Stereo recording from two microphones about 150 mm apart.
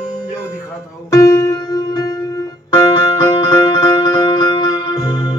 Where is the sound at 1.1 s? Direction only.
20° left (ahead or behind).